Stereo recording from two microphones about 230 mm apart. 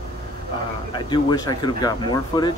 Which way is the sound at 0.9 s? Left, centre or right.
Centre.